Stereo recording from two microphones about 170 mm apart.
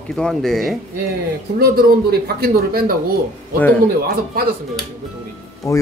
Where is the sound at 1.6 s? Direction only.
65° right (ahead or behind).